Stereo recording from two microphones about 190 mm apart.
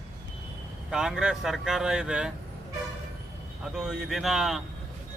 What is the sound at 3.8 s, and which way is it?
Speech, centre (ahead or behind).